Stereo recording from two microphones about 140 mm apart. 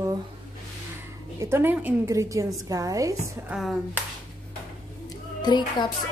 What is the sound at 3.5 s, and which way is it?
Speech, centre (ahead or behind).